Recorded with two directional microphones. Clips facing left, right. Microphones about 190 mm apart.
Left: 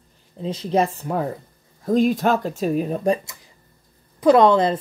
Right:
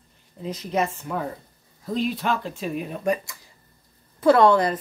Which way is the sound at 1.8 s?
45° left (ahead or behind).